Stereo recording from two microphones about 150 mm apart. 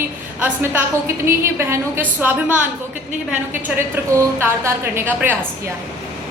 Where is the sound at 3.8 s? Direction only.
15° right (ahead or behind).